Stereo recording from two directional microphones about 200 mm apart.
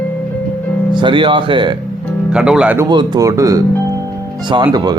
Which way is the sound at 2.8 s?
20° right (ahead or behind).